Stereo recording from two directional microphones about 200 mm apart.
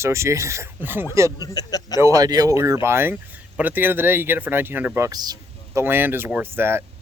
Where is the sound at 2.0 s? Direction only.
15° right (ahead or behind).